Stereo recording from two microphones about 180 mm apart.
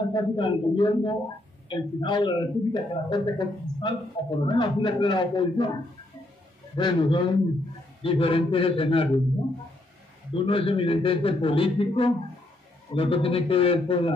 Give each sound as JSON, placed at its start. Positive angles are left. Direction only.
{"t": 0.0, "sound": "a man's voice", "side_deg": 25}
{"t": 6.8, "sound": "a man's voice", "side_deg": 25}
{"t": 10.3, "sound": "a man's voice", "side_deg": 30}